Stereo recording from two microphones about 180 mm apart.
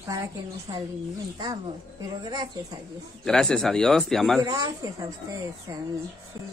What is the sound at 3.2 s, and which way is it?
Speech, 5° left (ahead or behind).